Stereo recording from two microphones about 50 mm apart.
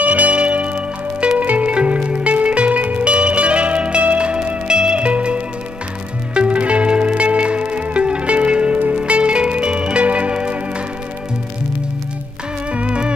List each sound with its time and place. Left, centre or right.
0.0 s music: right
12.7 s music: right